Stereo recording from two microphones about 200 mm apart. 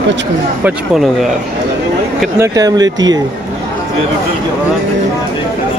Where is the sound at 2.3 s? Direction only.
15° right (ahead or behind).